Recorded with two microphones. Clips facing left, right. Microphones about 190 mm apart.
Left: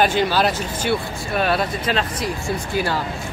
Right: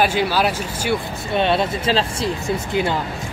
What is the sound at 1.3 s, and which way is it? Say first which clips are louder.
Speech: right 2 dB; 25° right (ahead or behind).